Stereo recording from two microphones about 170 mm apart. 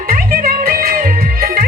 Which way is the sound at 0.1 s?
60° right (ahead or behind).